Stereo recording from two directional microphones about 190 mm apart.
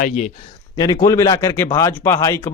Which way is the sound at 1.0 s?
15° left (ahead or behind).